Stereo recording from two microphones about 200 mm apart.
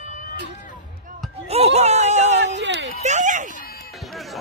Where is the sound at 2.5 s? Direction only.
65° right (ahead or behind).